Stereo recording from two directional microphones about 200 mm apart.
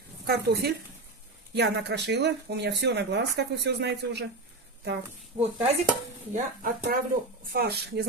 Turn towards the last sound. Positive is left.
turn(degrees=-55)  # may be behind; listen again after turning